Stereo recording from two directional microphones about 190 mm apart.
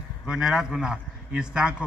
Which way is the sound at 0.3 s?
Centre (ahead or behind).